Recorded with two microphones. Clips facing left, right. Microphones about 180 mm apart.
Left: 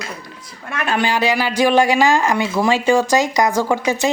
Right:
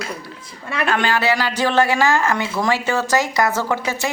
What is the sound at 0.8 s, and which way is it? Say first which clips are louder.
Speech: left 1 dB; 15° left (ahead or behind).